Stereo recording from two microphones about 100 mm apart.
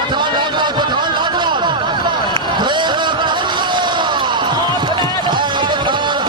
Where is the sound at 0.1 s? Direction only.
50° right (ahead or behind).